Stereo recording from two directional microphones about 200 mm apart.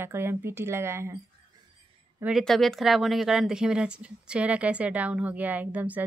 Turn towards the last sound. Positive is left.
turn(degrees=-10)  # may be behind; listen again after turning